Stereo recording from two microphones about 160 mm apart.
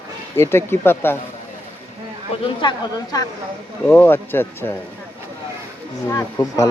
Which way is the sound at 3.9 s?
10° left (ahead or behind).